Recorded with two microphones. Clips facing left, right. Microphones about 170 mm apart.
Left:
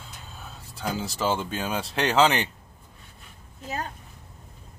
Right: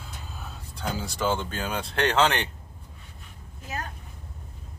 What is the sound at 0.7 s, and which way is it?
Speech, 5° left (ahead or behind).